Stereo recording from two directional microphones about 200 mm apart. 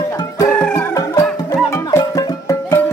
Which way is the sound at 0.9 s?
15° left (ahead or behind).